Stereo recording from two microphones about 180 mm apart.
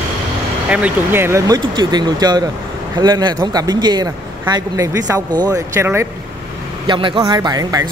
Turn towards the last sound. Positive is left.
turn(degrees=-20)  # may be behind; listen again after turning